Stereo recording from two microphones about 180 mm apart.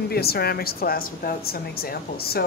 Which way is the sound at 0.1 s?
60° left (ahead or behind).